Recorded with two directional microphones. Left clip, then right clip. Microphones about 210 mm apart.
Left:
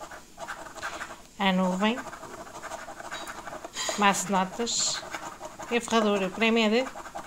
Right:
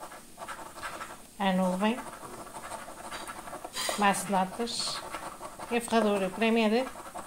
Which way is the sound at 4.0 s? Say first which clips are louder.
Left 3 dB; 15° left (ahead or behind).